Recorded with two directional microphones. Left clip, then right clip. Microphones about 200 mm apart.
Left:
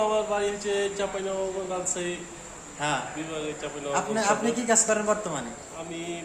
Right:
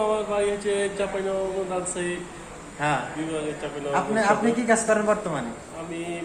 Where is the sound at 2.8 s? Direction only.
Centre (ahead or behind).